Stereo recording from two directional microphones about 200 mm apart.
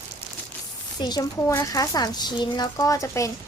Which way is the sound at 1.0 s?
20° left (ahead or behind).